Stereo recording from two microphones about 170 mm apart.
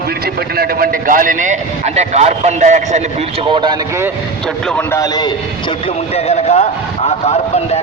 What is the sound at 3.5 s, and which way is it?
Speech, 30° right (ahead or behind).